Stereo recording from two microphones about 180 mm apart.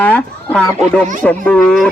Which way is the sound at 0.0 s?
5° left (ahead or behind).